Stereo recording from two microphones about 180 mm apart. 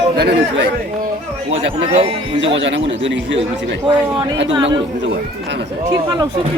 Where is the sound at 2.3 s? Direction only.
90° right.